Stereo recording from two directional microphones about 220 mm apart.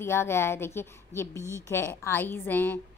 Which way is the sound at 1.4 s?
10° right (ahead or behind).